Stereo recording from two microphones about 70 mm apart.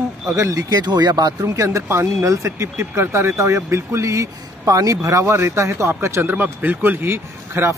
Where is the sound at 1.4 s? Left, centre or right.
Right.